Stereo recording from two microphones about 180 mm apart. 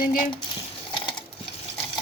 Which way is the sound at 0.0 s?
50° left (ahead or behind).